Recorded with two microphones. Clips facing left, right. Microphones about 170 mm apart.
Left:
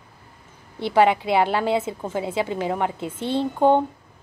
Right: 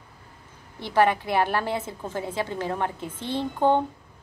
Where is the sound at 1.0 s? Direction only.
15° left (ahead or behind).